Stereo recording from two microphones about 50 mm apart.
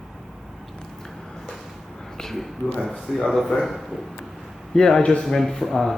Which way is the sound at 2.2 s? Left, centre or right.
Centre.